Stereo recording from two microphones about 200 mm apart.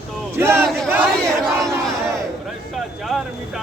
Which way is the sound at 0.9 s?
5° right (ahead or behind).